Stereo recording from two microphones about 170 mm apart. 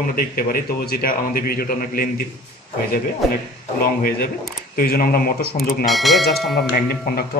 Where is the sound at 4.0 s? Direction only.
55° left (ahead or behind).